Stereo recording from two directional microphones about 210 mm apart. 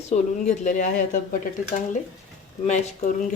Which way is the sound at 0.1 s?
35° left (ahead or behind).